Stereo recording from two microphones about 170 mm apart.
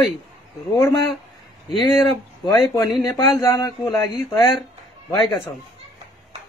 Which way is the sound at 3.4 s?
15° left (ahead or behind).